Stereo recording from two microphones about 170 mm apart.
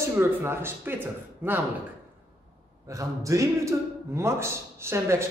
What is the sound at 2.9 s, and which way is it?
A man's voice, 20° right (ahead or behind).